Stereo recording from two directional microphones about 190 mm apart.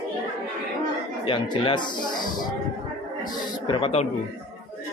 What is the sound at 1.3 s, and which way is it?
Speech, 25° left (ahead or behind).